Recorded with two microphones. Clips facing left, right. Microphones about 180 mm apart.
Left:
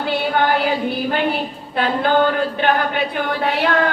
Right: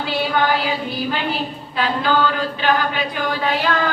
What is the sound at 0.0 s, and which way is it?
A woman's voice, 55° left (ahead or behind).